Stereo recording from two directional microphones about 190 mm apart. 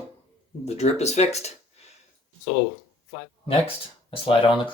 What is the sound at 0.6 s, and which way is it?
Speech, 35° left (ahead or behind).